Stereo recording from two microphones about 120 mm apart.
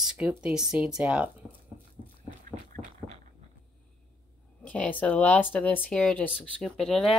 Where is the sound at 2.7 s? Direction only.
90° right.